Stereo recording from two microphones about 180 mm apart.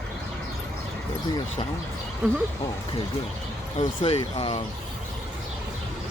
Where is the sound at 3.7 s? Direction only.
35° left (ahead or behind).